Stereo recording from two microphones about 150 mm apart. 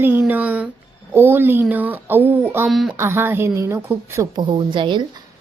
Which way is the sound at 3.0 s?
15° right (ahead or behind).